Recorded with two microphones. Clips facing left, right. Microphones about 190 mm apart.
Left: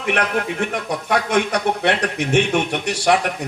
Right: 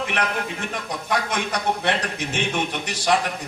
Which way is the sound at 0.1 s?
60° left (ahead or behind).